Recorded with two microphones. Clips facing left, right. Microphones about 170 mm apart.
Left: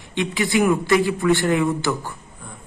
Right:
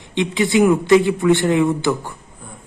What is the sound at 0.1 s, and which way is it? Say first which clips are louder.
A man's voice: right 4 dB; 20° right (ahead or behind).